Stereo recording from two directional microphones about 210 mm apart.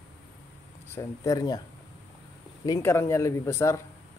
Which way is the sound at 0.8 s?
15° left (ahead or behind).